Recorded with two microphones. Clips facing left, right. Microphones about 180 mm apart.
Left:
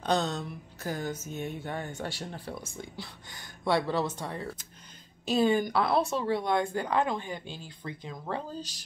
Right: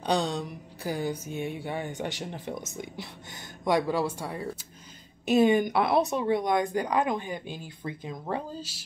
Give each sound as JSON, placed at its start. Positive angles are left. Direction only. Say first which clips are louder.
{"t": 0.0, "sound": "speech", "louder": "right 1 dB", "side_deg": -15}
{"t": 8.5, "sound": "speech", "louder": "even", "side_deg": -5}